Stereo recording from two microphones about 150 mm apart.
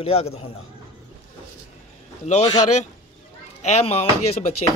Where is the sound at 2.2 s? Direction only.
50° left (ahead or behind).